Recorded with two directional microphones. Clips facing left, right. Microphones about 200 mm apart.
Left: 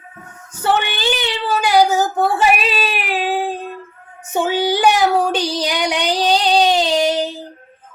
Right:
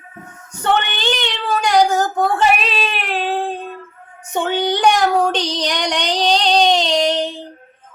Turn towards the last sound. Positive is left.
turn(degrees=5)  # may be behind; listen again after turning